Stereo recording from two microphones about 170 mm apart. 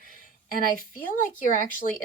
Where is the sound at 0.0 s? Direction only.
55° left (ahead or behind).